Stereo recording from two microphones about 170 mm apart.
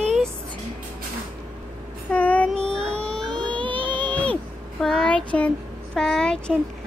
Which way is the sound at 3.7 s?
30° right (ahead or behind).